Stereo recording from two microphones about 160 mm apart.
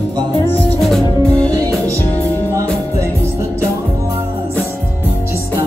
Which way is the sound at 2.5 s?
20° right (ahead or behind).